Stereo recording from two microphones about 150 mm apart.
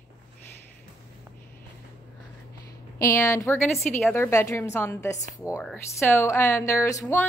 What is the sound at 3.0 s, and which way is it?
Speech, 20° left (ahead or behind).